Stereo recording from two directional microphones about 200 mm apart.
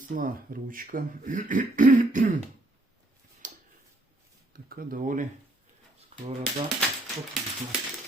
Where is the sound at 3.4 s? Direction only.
40° right (ahead or behind).